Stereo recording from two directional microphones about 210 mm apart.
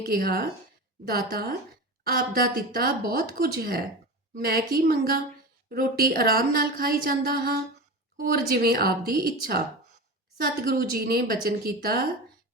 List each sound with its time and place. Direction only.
0.0 s a woman's voice: 45° right (ahead or behind)